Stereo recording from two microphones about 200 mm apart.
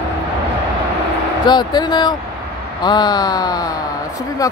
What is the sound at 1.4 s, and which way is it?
Speech, 20° left (ahead or behind).